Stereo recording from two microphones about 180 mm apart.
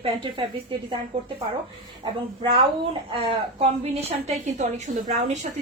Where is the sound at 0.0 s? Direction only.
30° right (ahead or behind).